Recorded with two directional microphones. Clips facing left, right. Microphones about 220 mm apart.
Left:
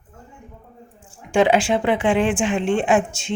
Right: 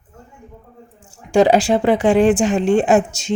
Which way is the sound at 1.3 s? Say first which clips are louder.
Right 4 dB; 40° right (ahead or behind).